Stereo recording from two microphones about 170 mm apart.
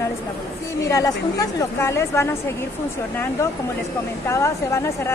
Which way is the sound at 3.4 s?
15° left (ahead or behind).